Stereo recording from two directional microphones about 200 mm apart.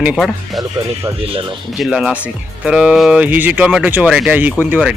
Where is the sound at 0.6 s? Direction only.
20° right (ahead or behind).